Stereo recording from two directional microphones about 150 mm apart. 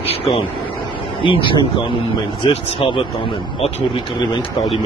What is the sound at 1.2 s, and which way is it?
Speech, 35° left (ahead or behind).